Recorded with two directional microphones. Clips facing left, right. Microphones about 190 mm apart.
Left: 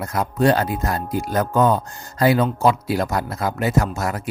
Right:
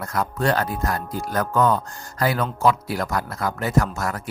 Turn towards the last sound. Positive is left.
turn(degrees=20)  # may be behind; listen again after turning